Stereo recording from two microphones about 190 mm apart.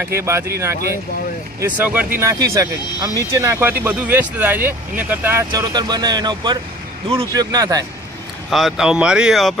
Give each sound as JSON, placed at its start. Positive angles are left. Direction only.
{"t": 0.0, "sound": "speech", "side_deg": -15}
{"t": 1.6, "sound": "speech", "side_deg": -10}
{"t": 8.5, "sound": "speech", "side_deg": 0}